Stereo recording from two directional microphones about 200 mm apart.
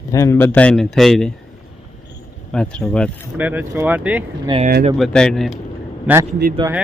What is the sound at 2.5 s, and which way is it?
Speech, 5° left (ahead or behind).